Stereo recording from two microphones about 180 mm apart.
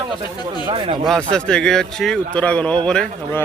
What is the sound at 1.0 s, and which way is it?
Speech, 5° left (ahead or behind).